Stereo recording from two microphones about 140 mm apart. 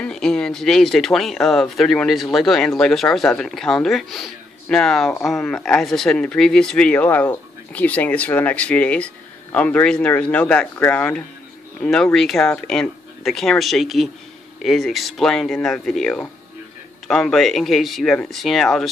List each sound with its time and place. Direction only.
0.0 s speech: 5° left (ahead or behind)